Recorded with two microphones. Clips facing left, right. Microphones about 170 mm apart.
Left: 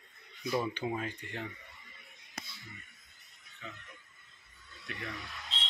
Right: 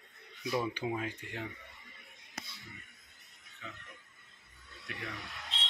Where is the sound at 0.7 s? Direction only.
5° right (ahead or behind).